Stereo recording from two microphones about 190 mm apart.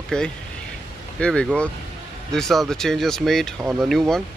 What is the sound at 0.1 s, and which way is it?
Speech, 5° left (ahead or behind).